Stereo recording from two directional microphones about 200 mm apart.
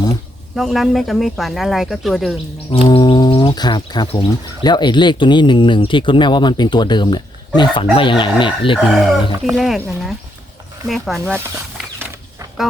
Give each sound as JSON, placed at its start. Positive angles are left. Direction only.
{"t": 0.5, "sound": "speech", "side_deg": 0}
{"t": 2.6, "sound": "speech", "side_deg": 25}
{"t": 9.4, "sound": "speech", "side_deg": 0}